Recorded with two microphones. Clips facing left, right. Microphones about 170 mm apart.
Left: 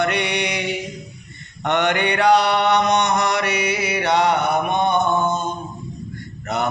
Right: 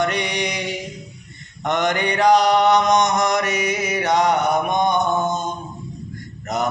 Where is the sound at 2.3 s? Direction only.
40° right (ahead or behind).